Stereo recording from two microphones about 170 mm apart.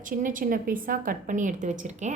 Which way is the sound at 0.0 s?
50° right (ahead or behind).